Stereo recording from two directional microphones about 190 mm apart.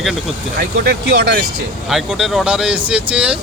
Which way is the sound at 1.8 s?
Centre (ahead or behind).